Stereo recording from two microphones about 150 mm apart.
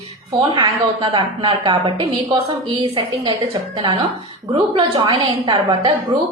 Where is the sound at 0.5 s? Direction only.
30° right (ahead or behind).